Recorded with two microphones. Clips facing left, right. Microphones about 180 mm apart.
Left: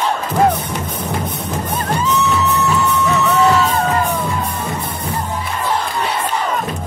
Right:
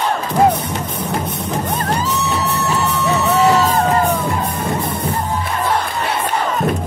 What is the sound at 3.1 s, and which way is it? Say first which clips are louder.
Music: right 1 dB; 35° right (ahead or behind).